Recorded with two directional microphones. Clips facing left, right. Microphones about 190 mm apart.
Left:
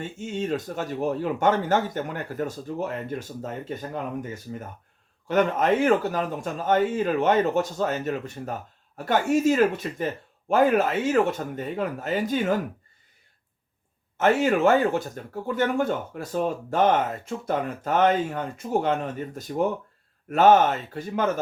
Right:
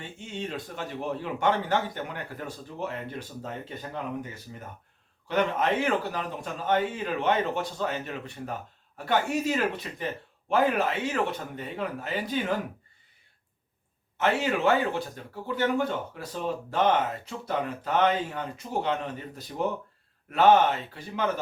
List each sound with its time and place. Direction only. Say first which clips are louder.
0.0 s speech: left 6 dB; 45° left (ahead or behind)
5.3 s speech: left 4 dB; 45° left (ahead or behind)
14.2 s speech: left 5 dB; 45° left (ahead or behind)